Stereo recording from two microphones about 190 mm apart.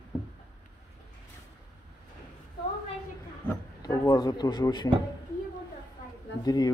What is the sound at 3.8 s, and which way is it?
A man's voice, 20° left (ahead or behind).